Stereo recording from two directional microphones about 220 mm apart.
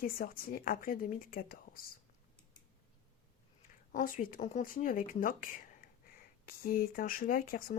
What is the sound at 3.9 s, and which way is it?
Speech, 40° left (ahead or behind).